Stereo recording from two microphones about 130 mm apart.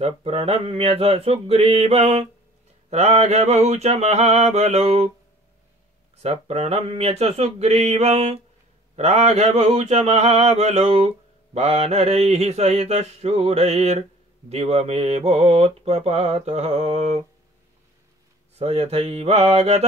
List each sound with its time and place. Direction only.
0.0 s mantra: 50° right (ahead or behind)
6.2 s mantra: 55° right (ahead or behind)
18.6 s mantra: 55° right (ahead or behind)